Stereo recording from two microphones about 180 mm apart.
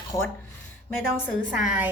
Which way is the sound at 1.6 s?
5° right (ahead or behind).